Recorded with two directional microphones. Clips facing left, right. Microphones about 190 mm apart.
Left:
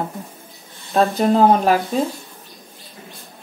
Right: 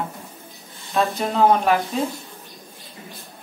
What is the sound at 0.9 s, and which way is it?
Speech, 35° left (ahead or behind).